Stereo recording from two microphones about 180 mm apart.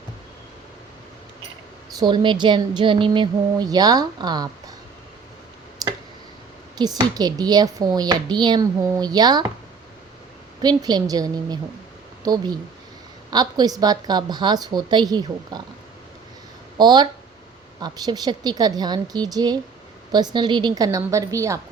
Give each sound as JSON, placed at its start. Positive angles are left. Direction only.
{"t": 2.0, "sound": "a woman's voice", "side_deg": -25}
{"t": 5.8, "sound": "a sound", "side_deg": -20}
{"t": 6.7, "sound": "a woman's voice", "side_deg": -20}
{"t": 10.6, "sound": "a woman's voice", "side_deg": -20}
{"t": 16.7, "sound": "a woman's voice", "side_deg": -25}